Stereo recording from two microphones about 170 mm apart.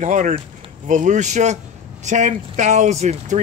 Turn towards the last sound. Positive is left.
turn(degrees=-40)  # may be behind; listen again after turning